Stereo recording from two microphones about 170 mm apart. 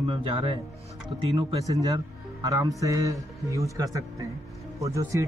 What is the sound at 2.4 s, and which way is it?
A man's voice, 20° right (ahead or behind).